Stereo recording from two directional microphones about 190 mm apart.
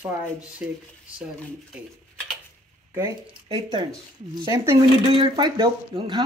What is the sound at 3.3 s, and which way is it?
Speech, 25° right (ahead or behind).